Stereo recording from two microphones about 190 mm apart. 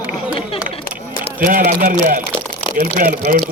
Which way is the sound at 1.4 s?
50° right (ahead or behind).